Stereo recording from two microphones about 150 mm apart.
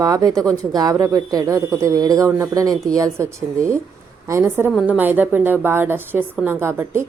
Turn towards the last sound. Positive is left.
turn(degrees=-15)  # may be behind; listen again after turning